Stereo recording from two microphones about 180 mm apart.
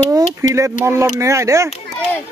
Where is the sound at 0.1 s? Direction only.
15° right (ahead or behind).